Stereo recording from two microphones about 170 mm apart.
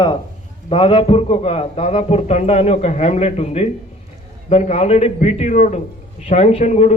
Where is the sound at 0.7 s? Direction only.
30° left (ahead or behind).